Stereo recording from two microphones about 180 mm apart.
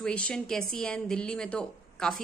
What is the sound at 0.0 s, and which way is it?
A woman's voice, 5° left (ahead or behind).